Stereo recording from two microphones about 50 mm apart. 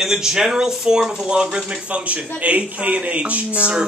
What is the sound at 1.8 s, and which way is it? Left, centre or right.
Speech, right.